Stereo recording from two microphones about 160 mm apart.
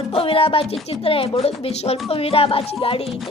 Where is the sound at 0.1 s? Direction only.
35° left (ahead or behind).